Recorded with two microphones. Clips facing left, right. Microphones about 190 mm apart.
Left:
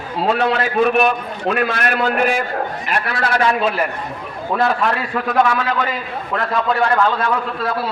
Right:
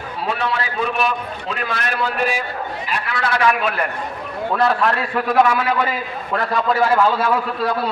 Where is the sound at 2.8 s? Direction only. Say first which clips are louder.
Left 3 dB; 45° left (ahead or behind).